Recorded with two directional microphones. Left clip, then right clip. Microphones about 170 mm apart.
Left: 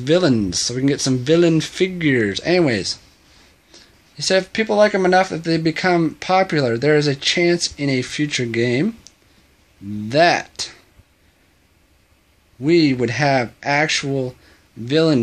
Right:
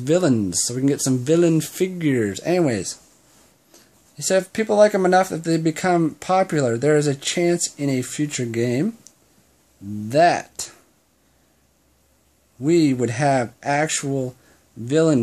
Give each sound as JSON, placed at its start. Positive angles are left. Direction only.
{"t": 0.0, "sound": "speech", "side_deg": -15}
{"t": 12.6, "sound": "speech", "side_deg": -15}